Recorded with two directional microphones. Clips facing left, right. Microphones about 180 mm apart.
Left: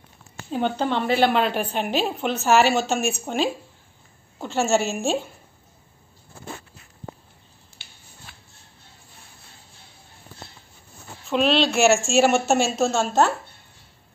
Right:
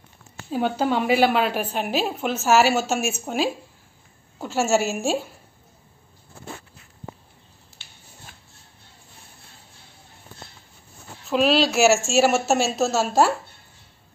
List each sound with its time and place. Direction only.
0.5 s a woman's voice: 5° right (ahead or behind)
8.3 s music: 45° right (ahead or behind)
11.2 s a woman's voice: 5° right (ahead or behind)